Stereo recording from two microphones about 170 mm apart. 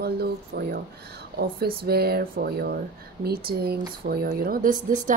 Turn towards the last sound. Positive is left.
turn(degrees=-25)  # may be behind; listen again after turning